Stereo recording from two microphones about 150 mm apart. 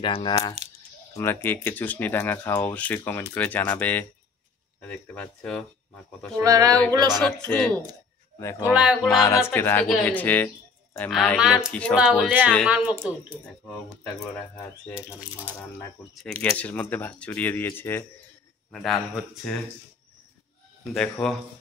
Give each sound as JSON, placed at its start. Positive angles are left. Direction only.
{"t": 0.0, "sound": "speech", "side_deg": 35}
{"t": 1.1, "sound": "speech", "side_deg": 15}
{"t": 6.4, "sound": "a sound", "side_deg": -25}
{"t": 7.2, "sound": "speech", "side_deg": 5}
{"t": 8.4, "sound": "speech", "side_deg": 20}
{"t": 11.3, "sound": "speech", "side_deg": -5}
{"t": 16.5, "sound": "speech", "side_deg": 10}
{"t": 18.7, "sound": "speech", "side_deg": 5}
{"t": 20.9, "sound": "speech", "side_deg": 5}